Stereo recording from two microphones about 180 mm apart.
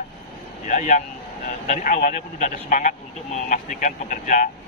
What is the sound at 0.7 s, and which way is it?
Speech, 45° left (ahead or behind).